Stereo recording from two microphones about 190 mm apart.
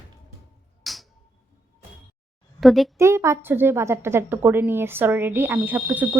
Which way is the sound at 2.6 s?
Centre (ahead or behind).